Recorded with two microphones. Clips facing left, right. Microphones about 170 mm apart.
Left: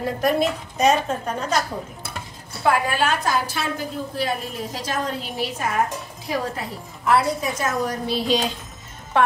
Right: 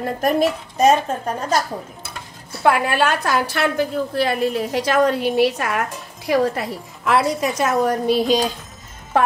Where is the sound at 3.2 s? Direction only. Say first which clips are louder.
Right 4 dB; 65° right (ahead or behind).